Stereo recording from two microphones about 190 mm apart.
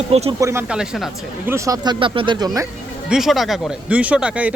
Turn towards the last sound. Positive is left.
turn(degrees=-5)  # may be behind; listen again after turning